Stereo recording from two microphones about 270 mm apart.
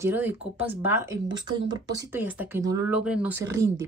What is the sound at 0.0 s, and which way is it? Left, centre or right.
Speech, centre.